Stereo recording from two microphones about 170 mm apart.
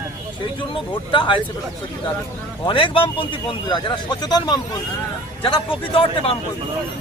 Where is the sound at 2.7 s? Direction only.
30° left (ahead or behind).